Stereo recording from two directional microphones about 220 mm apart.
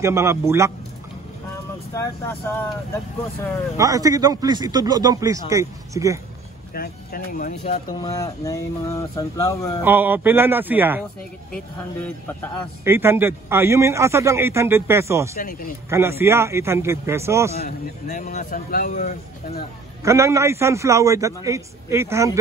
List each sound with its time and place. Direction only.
0.0 s a man's voice: 10° right (ahead or behind)
2.0 s speech: 10° left (ahead or behind)
3.7 s a man's voice: 15° right (ahead or behind)
6.7 s speech: 40° left (ahead or behind)
8.0 s speech: 15° left (ahead or behind)
9.8 s a man's voice: 10° right (ahead or behind)
11.5 s speech: 5° left (ahead or behind)
12.8 s a man's voice: 10° right (ahead or behind)
15.3 s speech: 40° left (ahead or behind)
15.9 s a man's voice: 10° right (ahead or behind)
17.6 s speech: 35° left (ahead or behind)
20.0 s a man's voice: 15° right (ahead or behind)